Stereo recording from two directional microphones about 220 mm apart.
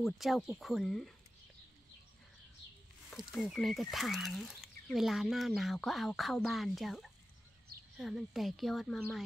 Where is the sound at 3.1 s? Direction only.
Centre (ahead or behind).